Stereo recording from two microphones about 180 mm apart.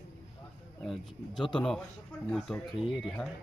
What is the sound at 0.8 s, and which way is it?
Speech, centre (ahead or behind).